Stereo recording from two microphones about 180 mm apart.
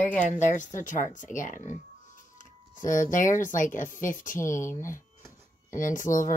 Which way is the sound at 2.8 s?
45° left (ahead or behind).